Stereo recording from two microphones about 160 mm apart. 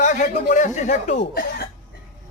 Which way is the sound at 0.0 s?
50° left (ahead or behind).